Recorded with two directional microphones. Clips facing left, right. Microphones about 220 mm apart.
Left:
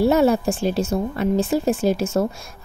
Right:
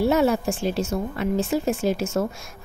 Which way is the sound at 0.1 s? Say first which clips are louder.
Left 3 dB; 35° left (ahead or behind).